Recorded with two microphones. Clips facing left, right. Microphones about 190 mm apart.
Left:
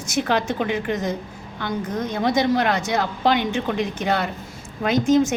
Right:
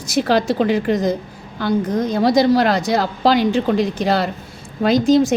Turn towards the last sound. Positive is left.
turn(degrees=-35)  # may be behind; listen again after turning